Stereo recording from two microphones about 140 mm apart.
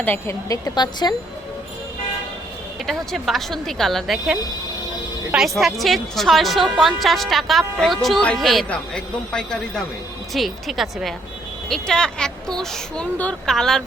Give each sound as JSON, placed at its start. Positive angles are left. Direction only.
{"t": 0.0, "sound": "speech", "side_deg": 15}
{"t": 2.8, "sound": "speech", "side_deg": 0}